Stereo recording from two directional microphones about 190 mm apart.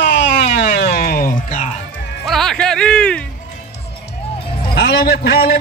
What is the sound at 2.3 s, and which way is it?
Speech, centre (ahead or behind).